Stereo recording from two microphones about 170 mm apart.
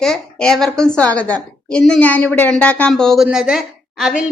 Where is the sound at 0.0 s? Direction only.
5° left (ahead or behind).